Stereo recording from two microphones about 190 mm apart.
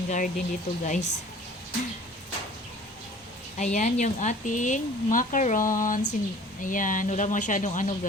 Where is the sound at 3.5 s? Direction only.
40° left (ahead or behind).